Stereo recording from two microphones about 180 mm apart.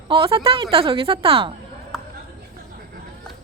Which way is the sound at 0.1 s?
30° right (ahead or behind).